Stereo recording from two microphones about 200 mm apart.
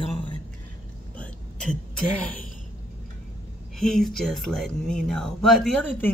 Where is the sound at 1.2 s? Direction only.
5° left (ahead or behind).